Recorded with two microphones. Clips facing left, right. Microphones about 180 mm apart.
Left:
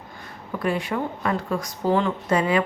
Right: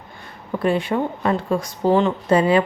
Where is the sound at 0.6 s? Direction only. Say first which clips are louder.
Right 5 dB; 30° right (ahead or behind).